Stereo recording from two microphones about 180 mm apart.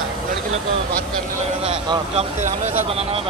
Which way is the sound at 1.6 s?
30° right (ahead or behind).